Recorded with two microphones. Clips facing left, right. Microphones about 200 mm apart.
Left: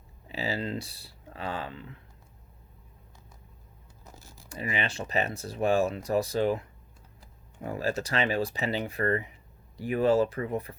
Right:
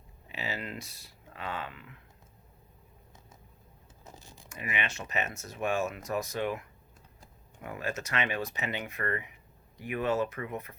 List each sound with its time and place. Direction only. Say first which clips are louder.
0.3 s speech: left 6 dB; 35° left (ahead or behind)
4.4 s speech: left 4 dB; 30° left (ahead or behind)